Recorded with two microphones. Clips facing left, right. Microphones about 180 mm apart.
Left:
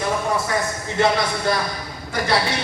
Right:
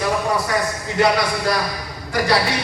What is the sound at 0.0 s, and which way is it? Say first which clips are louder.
A man's voice: right 2 dB; 25° left (ahead or behind).